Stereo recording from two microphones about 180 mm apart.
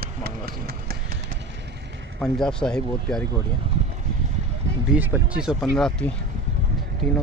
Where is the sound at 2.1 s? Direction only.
5° left (ahead or behind).